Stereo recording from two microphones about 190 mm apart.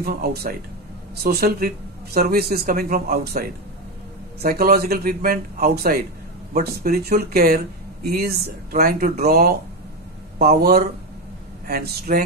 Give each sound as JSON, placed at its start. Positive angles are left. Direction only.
{"t": 0.0, "sound": "speech", "side_deg": -50}